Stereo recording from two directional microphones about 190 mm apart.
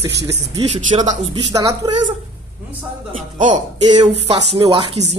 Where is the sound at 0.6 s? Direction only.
35° right (ahead or behind).